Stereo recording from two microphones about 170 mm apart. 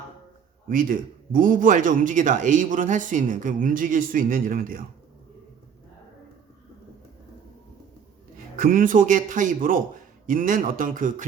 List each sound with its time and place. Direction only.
0.7 s a man's voice: 55° right (ahead or behind)
8.5 s a man's voice: 55° right (ahead or behind)